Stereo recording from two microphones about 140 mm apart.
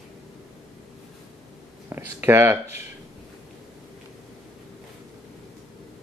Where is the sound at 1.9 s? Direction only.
20° right (ahead or behind).